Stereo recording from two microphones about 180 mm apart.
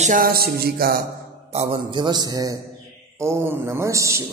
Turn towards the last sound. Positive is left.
turn(degrees=-15)  # may be behind; listen again after turning